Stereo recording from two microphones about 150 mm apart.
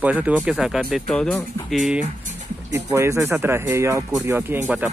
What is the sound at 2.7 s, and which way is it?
Speech, 20° right (ahead or behind).